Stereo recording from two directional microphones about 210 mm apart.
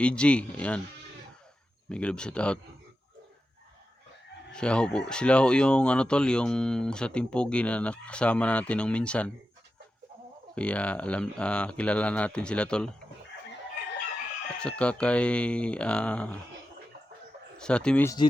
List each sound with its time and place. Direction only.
0.0 s speech: 5° left (ahead or behind)
1.9 s speech: 5° left (ahead or behind)
4.5 s speech: 5° left (ahead or behind)
10.5 s speech: 5° left (ahead or behind)
14.6 s speech: 5° left (ahead or behind)
17.6 s speech: 5° left (ahead or behind)